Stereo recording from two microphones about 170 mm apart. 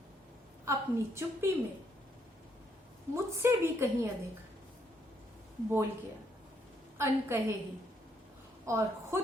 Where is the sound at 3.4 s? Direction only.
15° right (ahead or behind).